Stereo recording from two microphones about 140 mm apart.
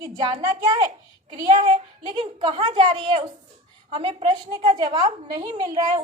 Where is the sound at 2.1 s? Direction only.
35° right (ahead or behind).